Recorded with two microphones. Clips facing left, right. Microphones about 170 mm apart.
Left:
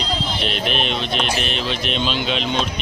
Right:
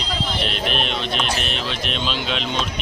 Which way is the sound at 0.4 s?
Centre (ahead or behind).